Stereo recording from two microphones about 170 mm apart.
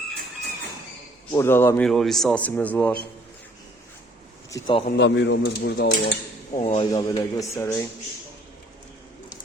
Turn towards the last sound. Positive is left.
turn(degrees=15)  # may be behind; listen again after turning